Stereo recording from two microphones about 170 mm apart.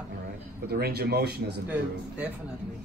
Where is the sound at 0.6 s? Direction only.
70° right (ahead or behind).